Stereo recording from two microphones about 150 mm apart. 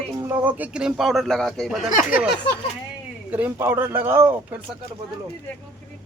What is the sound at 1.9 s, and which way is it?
Speech, 65° left (ahead or behind).